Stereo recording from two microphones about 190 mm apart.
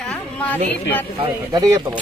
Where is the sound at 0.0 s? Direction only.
5° left (ahead or behind).